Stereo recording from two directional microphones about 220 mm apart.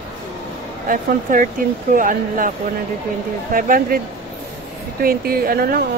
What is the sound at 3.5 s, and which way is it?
Speech, 40° right (ahead or behind).